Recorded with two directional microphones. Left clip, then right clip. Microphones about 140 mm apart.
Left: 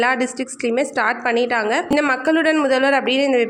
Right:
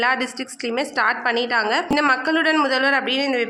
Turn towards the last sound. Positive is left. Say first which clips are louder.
# left 3 dB
turn(degrees=40)  # may be behind; listen again after turning